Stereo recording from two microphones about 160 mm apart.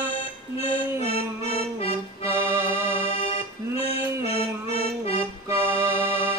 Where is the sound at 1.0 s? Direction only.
35° left (ahead or behind).